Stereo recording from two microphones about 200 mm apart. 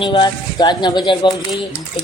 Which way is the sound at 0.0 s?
25° left (ahead or behind).